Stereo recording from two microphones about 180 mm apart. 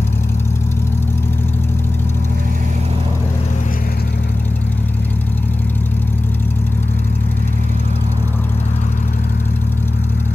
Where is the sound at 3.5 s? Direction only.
45° left (ahead or behind).